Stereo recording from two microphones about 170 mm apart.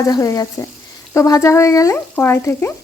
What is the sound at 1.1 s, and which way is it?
Speech, 20° left (ahead or behind).